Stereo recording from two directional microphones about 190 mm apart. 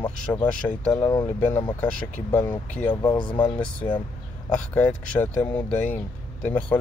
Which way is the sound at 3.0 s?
25° left (ahead or behind).